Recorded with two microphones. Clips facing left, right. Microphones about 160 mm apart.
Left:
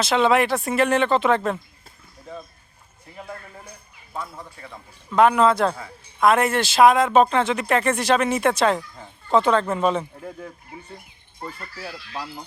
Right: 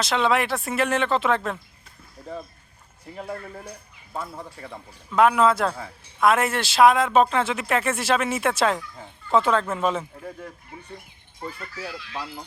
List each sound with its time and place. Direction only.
0.0 s speech: centre (ahead or behind)
5.1 s speech: 5° right (ahead or behind)
11.9 s speech: 35° left (ahead or behind)